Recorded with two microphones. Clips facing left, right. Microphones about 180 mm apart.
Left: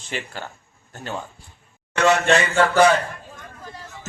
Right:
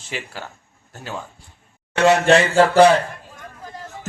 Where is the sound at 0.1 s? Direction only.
5° right (ahead or behind).